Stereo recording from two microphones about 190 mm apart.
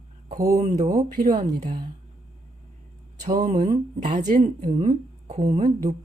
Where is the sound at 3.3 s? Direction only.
40° right (ahead or behind).